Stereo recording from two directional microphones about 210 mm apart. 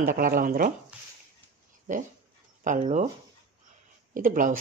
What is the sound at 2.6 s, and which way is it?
Speech, 35° right (ahead or behind).